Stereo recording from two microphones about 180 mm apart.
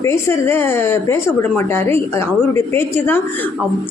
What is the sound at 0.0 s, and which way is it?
A woman's voice, 15° left (ahead or behind).